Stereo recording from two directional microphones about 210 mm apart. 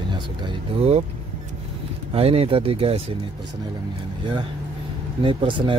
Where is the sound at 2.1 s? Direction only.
30° right (ahead or behind).